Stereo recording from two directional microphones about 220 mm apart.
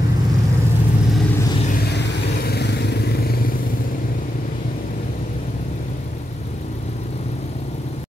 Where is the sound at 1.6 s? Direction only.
40° left (ahead or behind).